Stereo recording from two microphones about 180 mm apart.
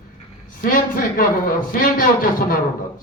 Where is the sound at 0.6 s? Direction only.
50° left (ahead or behind).